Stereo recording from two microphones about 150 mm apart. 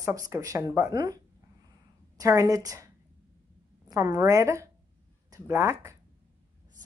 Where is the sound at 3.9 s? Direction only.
25° right (ahead or behind).